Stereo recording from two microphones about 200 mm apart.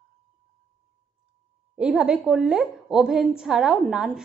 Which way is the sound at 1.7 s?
5° right (ahead or behind).